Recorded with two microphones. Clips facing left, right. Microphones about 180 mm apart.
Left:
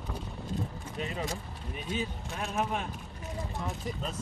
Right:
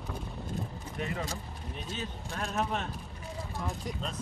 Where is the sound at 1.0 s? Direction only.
20° left (ahead or behind).